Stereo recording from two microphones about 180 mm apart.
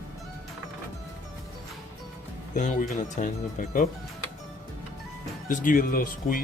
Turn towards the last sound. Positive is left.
turn(degrees=50)  # may be behind; listen again after turning